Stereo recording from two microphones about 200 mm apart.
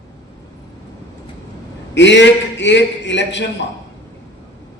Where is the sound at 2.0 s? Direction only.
65° left (ahead or behind).